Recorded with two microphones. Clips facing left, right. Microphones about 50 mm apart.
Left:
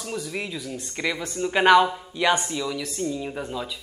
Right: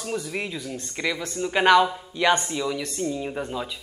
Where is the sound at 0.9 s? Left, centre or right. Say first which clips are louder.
Even; centre.